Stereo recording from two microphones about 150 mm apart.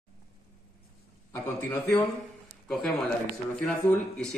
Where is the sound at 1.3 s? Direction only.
20° left (ahead or behind).